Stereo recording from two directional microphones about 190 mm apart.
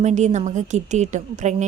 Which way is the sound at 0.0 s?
40° right (ahead or behind).